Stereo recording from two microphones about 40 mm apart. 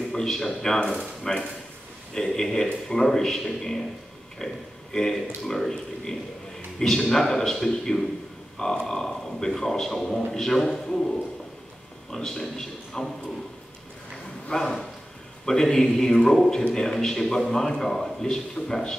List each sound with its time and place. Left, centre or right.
0.1 s a man's voice: centre
14.5 s a man's voice: centre